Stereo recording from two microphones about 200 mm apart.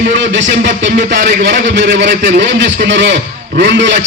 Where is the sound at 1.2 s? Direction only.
60° right (ahead or behind).